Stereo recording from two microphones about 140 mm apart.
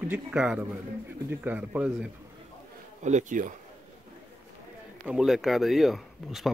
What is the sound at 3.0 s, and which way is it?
Speech, 60° right (ahead or behind).